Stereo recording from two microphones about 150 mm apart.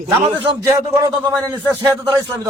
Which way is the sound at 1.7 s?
15° right (ahead or behind).